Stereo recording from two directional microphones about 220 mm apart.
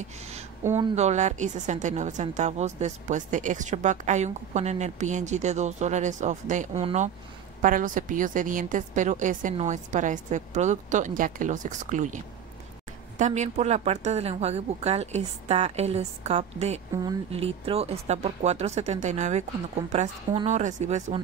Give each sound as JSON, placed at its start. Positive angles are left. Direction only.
{"t": 0.9, "sound": "a woman's voice", "side_deg": -30}
{"t": 13.2, "sound": "a woman's voice", "side_deg": -30}